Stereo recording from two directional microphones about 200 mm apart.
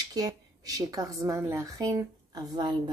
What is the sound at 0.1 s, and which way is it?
A woman's voice, 20° right (ahead or behind).